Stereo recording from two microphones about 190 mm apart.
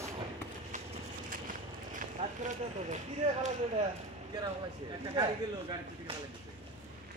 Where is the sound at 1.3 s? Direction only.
45° right (ahead or behind).